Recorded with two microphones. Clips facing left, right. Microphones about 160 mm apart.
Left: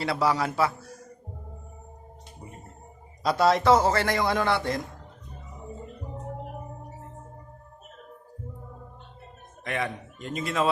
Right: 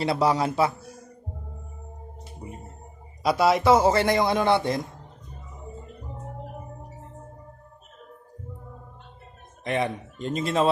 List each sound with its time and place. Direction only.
0.0 s speech: 20° right (ahead or behind)
3.2 s a man's voice: 10° right (ahead or behind)
9.6 s speech: 25° right (ahead or behind)